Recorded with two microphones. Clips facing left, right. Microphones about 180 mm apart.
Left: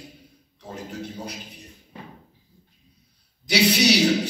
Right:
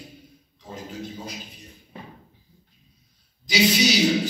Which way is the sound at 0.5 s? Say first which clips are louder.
Left 1 dB; 70° left (ahead or behind).